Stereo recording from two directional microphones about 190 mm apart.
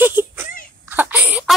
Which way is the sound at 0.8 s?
10° right (ahead or behind).